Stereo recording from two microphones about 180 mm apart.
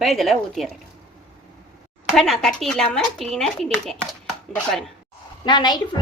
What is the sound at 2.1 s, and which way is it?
Speech, centre (ahead or behind).